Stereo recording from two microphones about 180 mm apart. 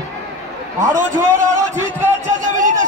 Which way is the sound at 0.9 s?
15° right (ahead or behind).